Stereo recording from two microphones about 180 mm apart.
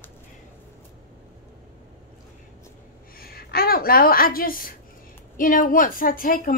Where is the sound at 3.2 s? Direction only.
55° left (ahead or behind).